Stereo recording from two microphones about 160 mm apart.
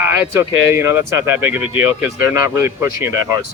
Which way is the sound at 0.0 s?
15° right (ahead or behind).